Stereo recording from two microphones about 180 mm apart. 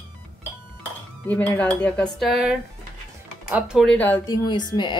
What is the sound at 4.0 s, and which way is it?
Speech, 10° left (ahead or behind).